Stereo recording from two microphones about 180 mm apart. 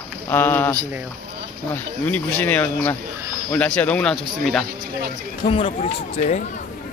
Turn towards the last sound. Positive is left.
turn(degrees=40)  # may be behind; listen again after turning